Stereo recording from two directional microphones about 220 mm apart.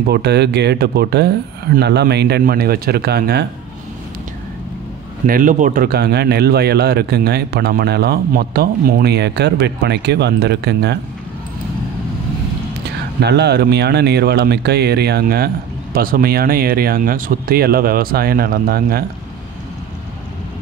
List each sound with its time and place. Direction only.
0.1 s speech: 50° right (ahead or behind)
5.2 s speech: 40° right (ahead or behind)
13.2 s speech: 50° right (ahead or behind)